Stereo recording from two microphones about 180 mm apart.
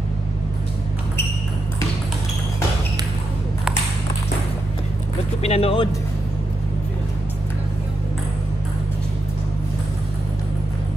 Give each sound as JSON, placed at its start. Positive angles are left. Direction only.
{"t": 5.4, "sound": "speech", "side_deg": 35}